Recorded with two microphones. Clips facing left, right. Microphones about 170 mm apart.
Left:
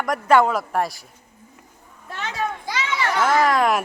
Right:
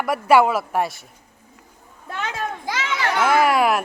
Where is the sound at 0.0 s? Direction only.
10° right (ahead or behind).